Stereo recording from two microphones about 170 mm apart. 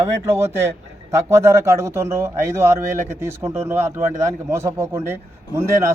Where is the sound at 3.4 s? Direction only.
15° right (ahead or behind).